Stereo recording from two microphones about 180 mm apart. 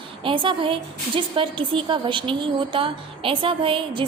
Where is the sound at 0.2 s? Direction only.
30° right (ahead or behind).